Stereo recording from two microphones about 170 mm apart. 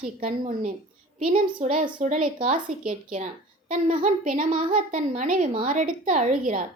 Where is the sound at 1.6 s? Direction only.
35° right (ahead or behind).